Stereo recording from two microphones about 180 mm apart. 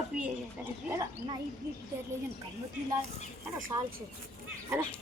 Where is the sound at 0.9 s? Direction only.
20° right (ahead or behind).